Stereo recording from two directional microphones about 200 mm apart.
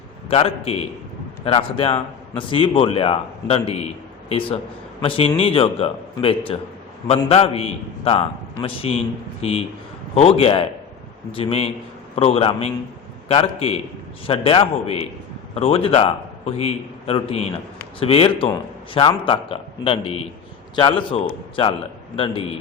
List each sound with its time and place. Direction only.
0.3 s a man's voice: 30° left (ahead or behind)